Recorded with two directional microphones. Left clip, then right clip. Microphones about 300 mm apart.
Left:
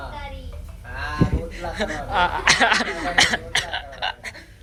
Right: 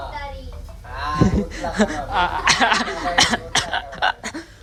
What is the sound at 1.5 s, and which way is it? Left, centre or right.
Speech, right.